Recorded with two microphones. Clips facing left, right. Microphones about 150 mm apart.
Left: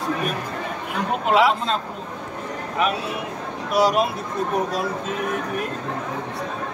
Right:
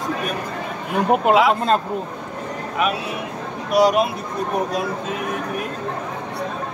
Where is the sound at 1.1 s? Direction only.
55° right (ahead or behind).